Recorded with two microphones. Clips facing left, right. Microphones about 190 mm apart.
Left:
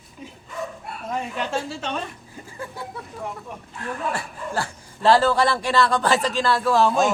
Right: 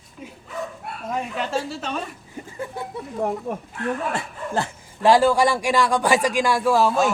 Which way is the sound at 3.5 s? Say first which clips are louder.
Right 8 dB; 50° right (ahead or behind).